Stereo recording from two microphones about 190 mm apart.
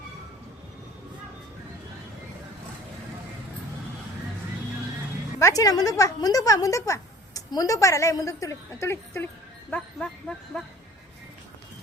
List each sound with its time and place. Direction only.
5.4 s a woman's voice: 15° left (ahead or behind)